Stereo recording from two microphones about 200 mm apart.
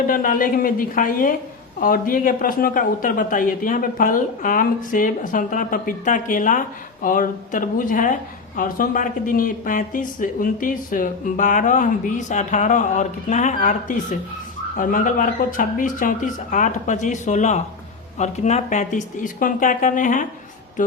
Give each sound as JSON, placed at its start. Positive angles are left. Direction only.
{"t": 0.1, "sound": "a man's voice", "side_deg": 45}